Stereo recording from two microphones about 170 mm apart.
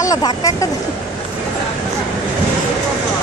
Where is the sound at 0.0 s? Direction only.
20° left (ahead or behind).